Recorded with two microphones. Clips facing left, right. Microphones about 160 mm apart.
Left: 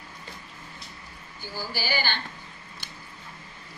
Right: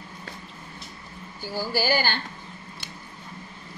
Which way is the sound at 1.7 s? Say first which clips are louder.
Right 6 dB; 45° right (ahead or behind).